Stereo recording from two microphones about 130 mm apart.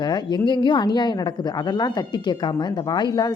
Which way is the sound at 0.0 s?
35° left (ahead or behind).